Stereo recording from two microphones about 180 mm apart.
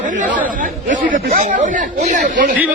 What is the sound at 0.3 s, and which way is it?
Chatter, 10° right (ahead or behind).